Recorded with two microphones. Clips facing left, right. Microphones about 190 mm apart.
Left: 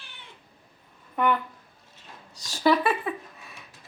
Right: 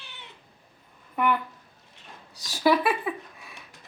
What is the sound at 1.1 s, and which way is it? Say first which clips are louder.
Speech: left 1 dB; 5° right (ahead or behind).